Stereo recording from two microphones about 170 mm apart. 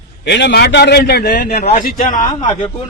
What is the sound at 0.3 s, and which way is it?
A man's voice, 85° left.